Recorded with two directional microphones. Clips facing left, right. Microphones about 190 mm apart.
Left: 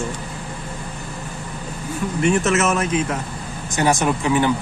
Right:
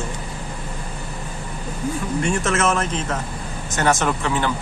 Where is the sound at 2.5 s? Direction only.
10° left (ahead or behind).